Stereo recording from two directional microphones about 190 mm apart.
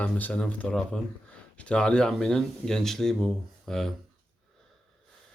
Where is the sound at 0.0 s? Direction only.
10° left (ahead or behind).